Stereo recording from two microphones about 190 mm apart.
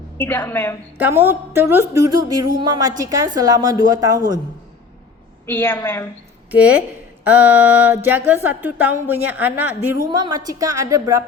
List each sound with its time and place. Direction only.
0.2 s a woman's voice: 10° left (ahead or behind)
0.9 s a sound: 10° right (ahead or behind)
2.6 s a woman's voice: 20° right (ahead or behind)
5.5 s a woman's voice: 10° left (ahead or behind)
6.5 s a sound: 10° right (ahead or behind)
10.1 s a woman's voice: 20° right (ahead or behind)